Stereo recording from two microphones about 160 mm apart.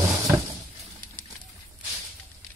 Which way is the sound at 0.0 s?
20° right (ahead or behind).